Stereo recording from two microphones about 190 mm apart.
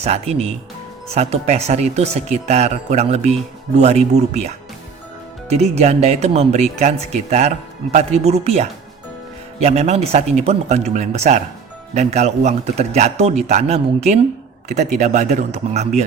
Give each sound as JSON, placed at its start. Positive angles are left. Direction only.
{"t": 0.0, "sound": "a man's voice", "side_deg": -35}
{"t": 5.7, "sound": "a man's voice", "side_deg": -35}